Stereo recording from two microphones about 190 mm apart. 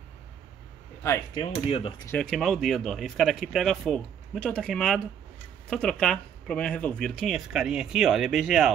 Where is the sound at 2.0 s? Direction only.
5° left (ahead or behind).